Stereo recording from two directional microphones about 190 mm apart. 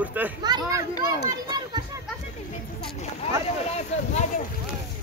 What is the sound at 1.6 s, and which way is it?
Children playing, 20° right (ahead or behind).